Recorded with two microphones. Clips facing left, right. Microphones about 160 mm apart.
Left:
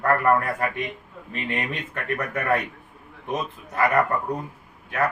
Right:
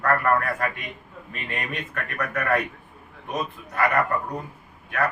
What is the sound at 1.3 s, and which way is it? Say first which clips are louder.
A man's voice: left 4 dB; 25° left (ahead or behind).